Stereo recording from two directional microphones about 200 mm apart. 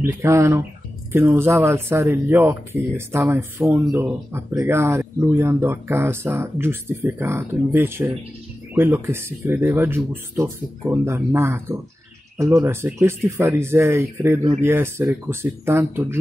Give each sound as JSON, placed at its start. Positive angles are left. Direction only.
{"t": 0.0, "sound": "speech", "side_deg": -15}